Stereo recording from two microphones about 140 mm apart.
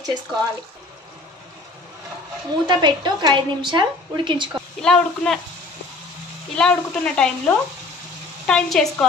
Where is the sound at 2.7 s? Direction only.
30° right (ahead or behind).